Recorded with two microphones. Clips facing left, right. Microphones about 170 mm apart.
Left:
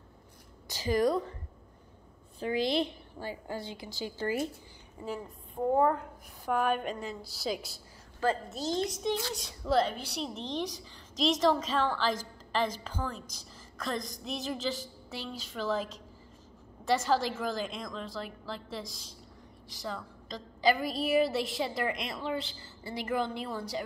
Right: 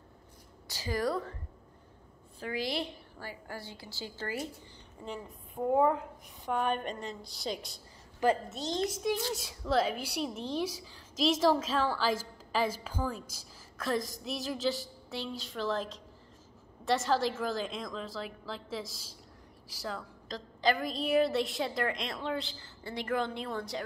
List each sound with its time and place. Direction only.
0.7 s a woman's voice: 20° left (ahead or behind)
2.4 s a woman's voice: 20° left (ahead or behind)
5.0 s a woman's voice: 5° left (ahead or behind)
5.7 s a woman's voice: 5° right (ahead or behind)